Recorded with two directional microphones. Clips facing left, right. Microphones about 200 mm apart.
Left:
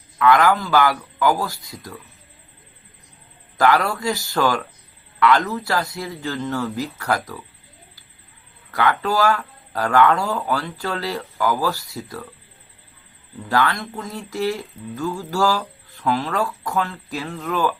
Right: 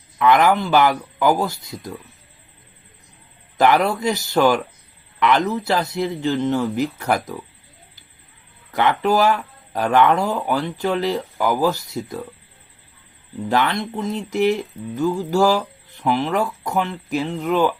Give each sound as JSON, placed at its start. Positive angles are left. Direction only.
{"t": 0.2, "sound": "speech", "side_deg": -20}
{"t": 3.6, "sound": "speech", "side_deg": -20}
{"t": 8.7, "sound": "speech", "side_deg": -20}
{"t": 13.5, "sound": "speech", "side_deg": -20}